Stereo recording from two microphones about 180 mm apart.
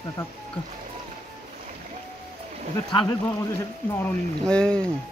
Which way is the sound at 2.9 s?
25° left (ahead or behind).